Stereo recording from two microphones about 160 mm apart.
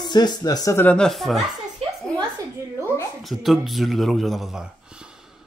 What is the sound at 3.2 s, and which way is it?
Speech, centre (ahead or behind).